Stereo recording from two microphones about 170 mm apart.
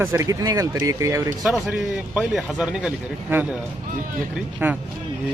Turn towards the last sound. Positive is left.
turn(degrees=-10)  # may be behind; listen again after turning